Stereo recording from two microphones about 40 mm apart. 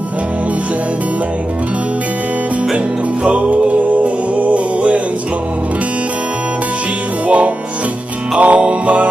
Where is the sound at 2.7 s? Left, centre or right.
Right.